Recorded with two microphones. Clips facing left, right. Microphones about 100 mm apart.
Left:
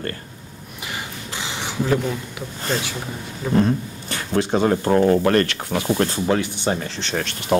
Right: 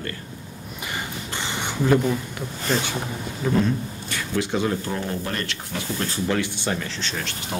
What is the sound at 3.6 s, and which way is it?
Speech, 40° left (ahead or behind).